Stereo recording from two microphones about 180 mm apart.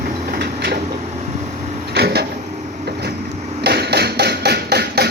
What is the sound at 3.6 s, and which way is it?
Hammer, 65° right (ahead or behind).